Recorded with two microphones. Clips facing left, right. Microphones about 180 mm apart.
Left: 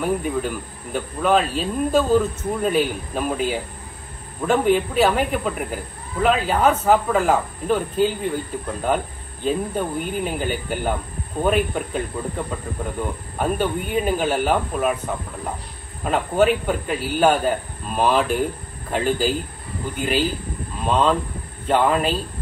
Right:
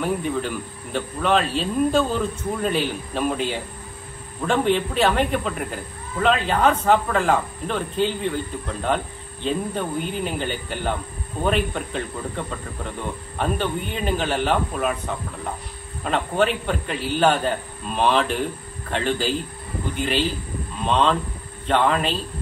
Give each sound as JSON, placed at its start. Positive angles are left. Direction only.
{"t": 0.0, "sound": "speech", "side_deg": 5}